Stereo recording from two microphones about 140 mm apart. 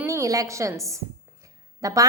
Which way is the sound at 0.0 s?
20° right (ahead or behind).